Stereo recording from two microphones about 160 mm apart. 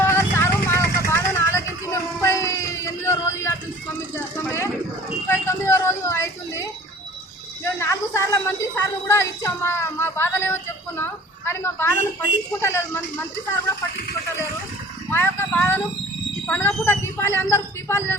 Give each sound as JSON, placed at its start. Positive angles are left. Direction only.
{"t": 0.0, "sound": "music", "side_deg": 15}
{"t": 5.3, "sound": "a sound", "side_deg": 15}
{"t": 12.6, "sound": "speech", "side_deg": 15}
{"t": 15.1, "sound": "speech", "side_deg": 10}